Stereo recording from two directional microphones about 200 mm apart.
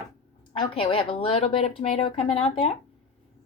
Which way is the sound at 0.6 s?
25° left (ahead or behind).